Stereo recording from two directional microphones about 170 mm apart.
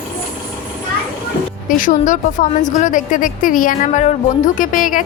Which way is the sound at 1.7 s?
50° left (ahead or behind).